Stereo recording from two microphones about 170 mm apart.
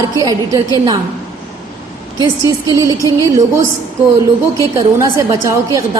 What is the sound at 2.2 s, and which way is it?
A woman's voice, 20° right (ahead or behind).